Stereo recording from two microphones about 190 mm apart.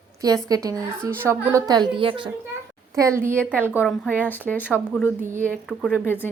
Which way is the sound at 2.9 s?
15° right (ahead or behind).